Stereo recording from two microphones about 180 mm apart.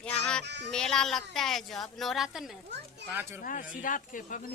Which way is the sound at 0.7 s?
5° left (ahead or behind).